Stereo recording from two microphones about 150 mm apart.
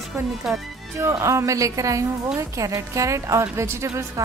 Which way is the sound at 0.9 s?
20° right (ahead or behind).